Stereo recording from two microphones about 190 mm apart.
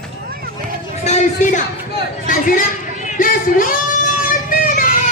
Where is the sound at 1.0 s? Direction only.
35° left (ahead or behind).